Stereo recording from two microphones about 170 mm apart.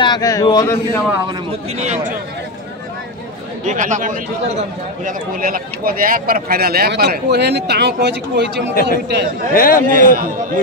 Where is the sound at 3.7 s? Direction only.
45° right (ahead or behind); by 8.5 s 80° right.